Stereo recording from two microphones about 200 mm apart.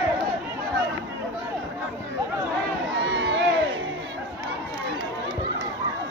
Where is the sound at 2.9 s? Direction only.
65° right (ahead or behind).